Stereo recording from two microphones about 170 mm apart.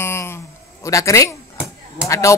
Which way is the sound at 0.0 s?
15° left (ahead or behind).